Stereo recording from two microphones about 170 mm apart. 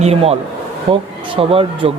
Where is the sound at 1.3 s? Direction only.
30° right (ahead or behind).